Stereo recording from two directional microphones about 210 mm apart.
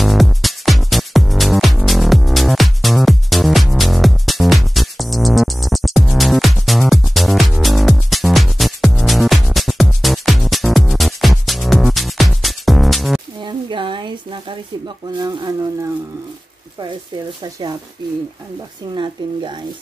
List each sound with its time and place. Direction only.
0.0 s music: centre (ahead or behind)
13.4 s a sound: 20° right (ahead or behind)
15.1 s speech: 20° right (ahead or behind)
17.4 s speech: 20° right (ahead or behind)